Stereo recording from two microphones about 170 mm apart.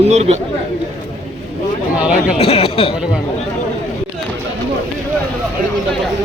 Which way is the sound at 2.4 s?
35° left (ahead or behind).